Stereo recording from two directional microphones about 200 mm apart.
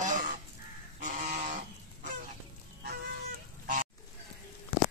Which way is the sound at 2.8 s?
55° right (ahead or behind).